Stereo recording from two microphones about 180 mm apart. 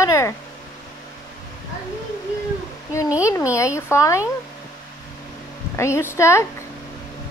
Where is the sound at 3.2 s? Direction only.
15° left (ahead or behind).